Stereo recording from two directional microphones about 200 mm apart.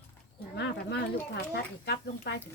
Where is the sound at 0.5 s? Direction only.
55° left (ahead or behind).